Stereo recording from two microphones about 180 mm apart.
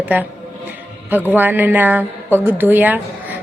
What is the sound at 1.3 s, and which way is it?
A woman's voice, 10° right (ahead or behind).